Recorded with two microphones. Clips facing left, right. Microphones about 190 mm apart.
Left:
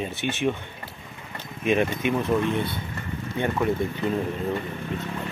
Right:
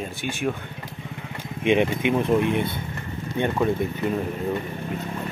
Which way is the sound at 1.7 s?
20° right (ahead or behind).